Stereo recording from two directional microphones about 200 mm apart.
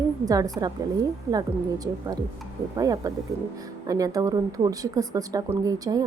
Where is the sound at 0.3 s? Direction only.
20° right (ahead or behind).